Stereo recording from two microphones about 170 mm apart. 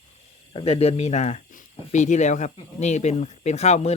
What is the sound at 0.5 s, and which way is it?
Speech, 35° left (ahead or behind).